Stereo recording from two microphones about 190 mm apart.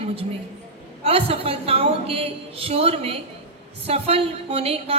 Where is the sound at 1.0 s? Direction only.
30° right (ahead or behind).